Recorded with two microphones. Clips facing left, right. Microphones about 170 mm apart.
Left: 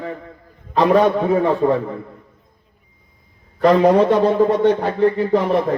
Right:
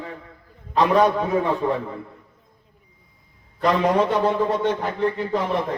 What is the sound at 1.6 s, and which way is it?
Speech, 45° left (ahead or behind).